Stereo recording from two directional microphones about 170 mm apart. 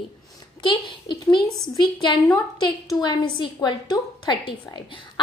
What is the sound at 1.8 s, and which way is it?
A woman's voice, 25° left (ahead or behind).